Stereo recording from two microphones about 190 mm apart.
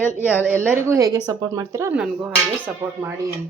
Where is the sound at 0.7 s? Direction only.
15° right (ahead or behind).